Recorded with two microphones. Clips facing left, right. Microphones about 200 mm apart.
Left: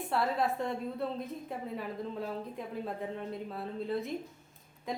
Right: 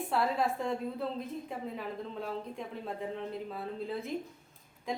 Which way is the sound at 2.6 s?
Centre (ahead or behind).